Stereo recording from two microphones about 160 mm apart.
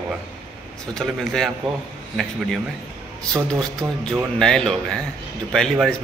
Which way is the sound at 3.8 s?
25° right (ahead or behind).